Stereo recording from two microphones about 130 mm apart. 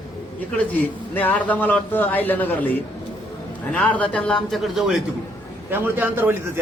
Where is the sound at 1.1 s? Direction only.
15° left (ahead or behind).